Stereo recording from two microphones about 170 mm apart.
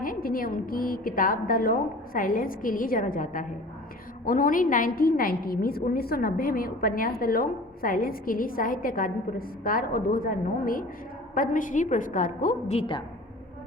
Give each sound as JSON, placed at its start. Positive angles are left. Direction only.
{"t": 0.0, "sound": "a woman's voice", "side_deg": 55}